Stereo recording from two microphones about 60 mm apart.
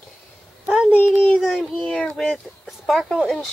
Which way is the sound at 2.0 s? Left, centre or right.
Centre.